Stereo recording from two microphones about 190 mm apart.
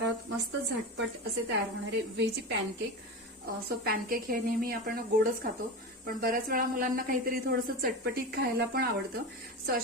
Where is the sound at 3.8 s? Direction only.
50° right (ahead or behind).